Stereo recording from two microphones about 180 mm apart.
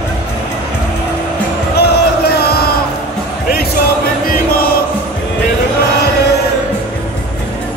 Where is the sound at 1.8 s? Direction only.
65° left (ahead or behind).